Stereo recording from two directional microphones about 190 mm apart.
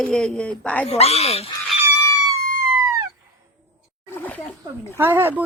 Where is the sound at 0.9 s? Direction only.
35° left (ahead or behind).